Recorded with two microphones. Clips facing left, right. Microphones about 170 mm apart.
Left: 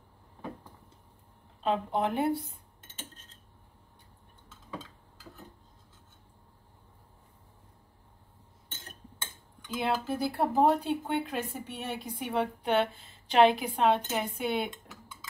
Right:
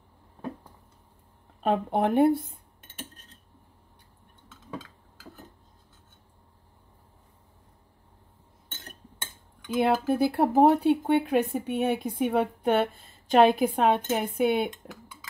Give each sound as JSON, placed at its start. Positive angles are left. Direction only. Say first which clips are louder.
{"t": 1.6, "sound": "speech", "louder": "right 4 dB", "side_deg": -55}
{"t": 9.7, "sound": "speech", "louder": "right 7 dB", "side_deg": -60}